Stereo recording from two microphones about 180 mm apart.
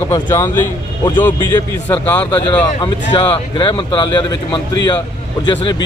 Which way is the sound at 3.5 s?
25° left (ahead or behind).